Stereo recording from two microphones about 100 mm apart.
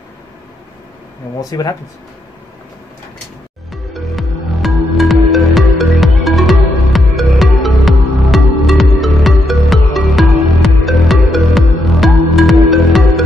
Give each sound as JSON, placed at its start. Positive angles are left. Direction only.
{"t": 1.4, "sound": "speech", "side_deg": 40}
{"t": 3.7, "sound": "music", "side_deg": 0}